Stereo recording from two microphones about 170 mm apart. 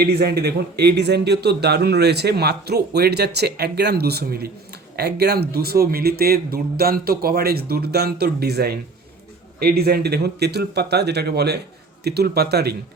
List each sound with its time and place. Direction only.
0.0 s a man's voice: 70° right (ahead or behind)